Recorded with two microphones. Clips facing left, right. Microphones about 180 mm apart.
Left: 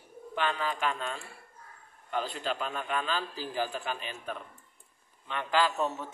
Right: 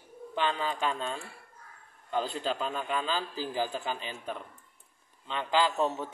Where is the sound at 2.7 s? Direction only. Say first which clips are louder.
Right 1 dB; 20° right (ahead or behind).